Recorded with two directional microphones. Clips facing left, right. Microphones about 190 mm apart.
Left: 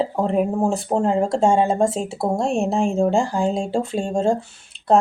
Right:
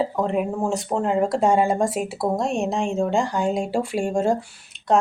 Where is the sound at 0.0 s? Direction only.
30° left (ahead or behind).